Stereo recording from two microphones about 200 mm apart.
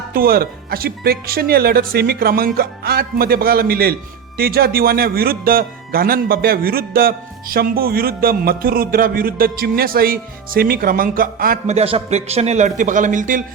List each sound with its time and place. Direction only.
0.1 s speech: 50° right (ahead or behind)